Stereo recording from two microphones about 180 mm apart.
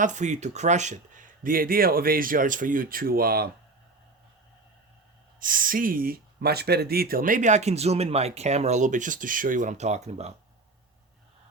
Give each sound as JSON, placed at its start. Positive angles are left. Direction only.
{"t": 0.0, "sound": "speech", "side_deg": -40}
{"t": 5.4, "sound": "speech", "side_deg": -50}